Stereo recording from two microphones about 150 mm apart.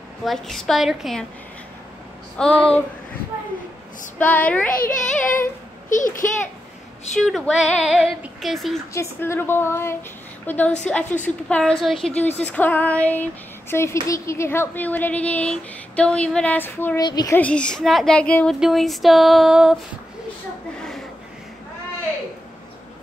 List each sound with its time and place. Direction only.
0.2 s speech: centre (ahead or behind)
2.3 s speech: 5° left (ahead or behind)
4.2 s speech: 10° left (ahead or behind)
4.6 s a child's voice: 70° left (ahead or behind)
7.2 s speech: 5° left (ahead or behind)
8.9 s a woman's voice: 15° left (ahead or behind)
17.0 s a child's voice: 25° left (ahead or behind)
17.4 s speech: 5° left (ahead or behind)